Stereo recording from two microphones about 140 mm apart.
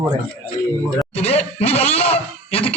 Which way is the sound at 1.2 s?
50° left (ahead or behind).